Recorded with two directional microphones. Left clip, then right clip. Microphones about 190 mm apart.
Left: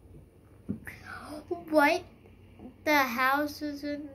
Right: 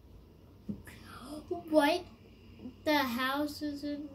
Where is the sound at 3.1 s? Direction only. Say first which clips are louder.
Left 6 dB; 15° right (ahead or behind).